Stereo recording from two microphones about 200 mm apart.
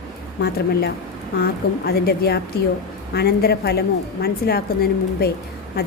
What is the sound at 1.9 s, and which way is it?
A woman's voice, 50° left (ahead or behind).